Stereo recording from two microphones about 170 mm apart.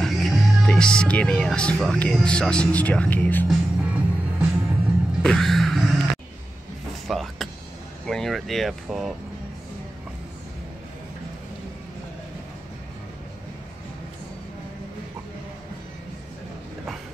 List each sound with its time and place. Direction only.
0.0 s speech: centre (ahead or behind)
3.4 s music: 5° right (ahead or behind)
5.2 s a sound: centre (ahead or behind)
7.1 s power windows: centre (ahead or behind)
8.1 s speech: centre (ahead or behind)